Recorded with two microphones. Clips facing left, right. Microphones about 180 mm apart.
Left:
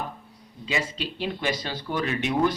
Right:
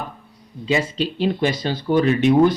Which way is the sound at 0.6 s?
30° right (ahead or behind).